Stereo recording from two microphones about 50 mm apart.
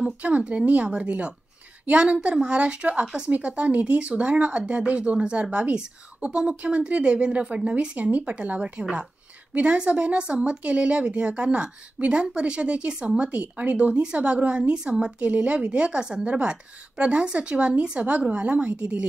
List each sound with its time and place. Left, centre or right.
0.2 s a woman's voice: right